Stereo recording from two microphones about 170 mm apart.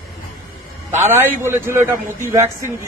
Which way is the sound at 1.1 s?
15° right (ahead or behind).